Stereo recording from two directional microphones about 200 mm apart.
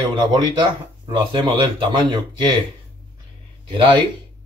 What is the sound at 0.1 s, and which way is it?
Speech, 20° right (ahead or behind).